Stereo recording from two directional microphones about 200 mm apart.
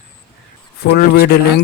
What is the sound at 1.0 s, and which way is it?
Speech, 50° left (ahead or behind).